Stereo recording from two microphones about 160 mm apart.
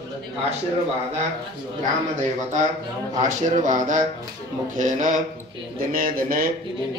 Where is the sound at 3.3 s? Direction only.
50° right (ahead or behind).